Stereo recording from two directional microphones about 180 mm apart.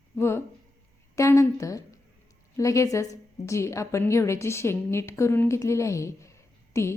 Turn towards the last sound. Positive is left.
turn(degrees=15)  # may be behind; listen again after turning